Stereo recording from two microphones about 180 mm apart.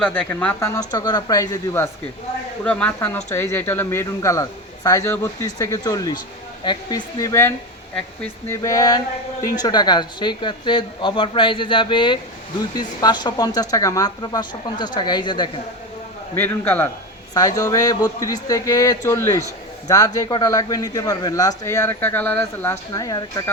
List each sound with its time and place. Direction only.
0.0 s a man's voice: 5° left (ahead or behind); by 15.4 s 25° left (ahead or behind)
16.3 s a man's voice: 10° left (ahead or behind)